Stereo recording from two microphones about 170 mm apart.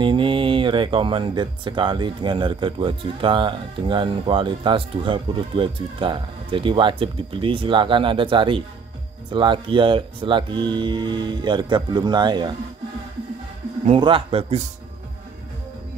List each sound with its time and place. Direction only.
0.0 s speech: 30° right (ahead or behind)
13.8 s a man's voice: 30° right (ahead or behind)